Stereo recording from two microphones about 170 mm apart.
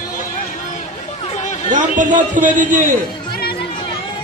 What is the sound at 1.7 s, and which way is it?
A man's voice, 50° right (ahead or behind).